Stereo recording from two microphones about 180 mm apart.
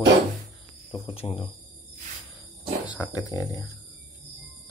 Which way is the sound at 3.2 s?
20° left (ahead or behind).